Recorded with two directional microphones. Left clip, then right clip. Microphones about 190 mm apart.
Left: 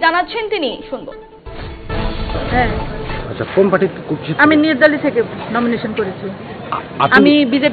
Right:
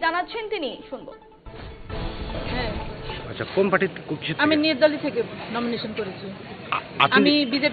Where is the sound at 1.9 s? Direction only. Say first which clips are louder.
Left 10 dB; centre (ahead or behind).